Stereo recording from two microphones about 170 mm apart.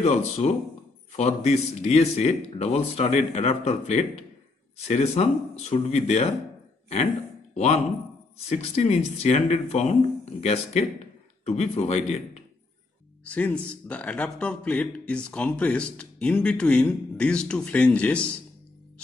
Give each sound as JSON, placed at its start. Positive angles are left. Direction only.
{"t": 0.0, "sound": "a man's voice", "side_deg": 40}
{"t": 7.5, "sound": "a man's voice", "side_deg": 40}
{"t": 13.2, "sound": "speech", "side_deg": 10}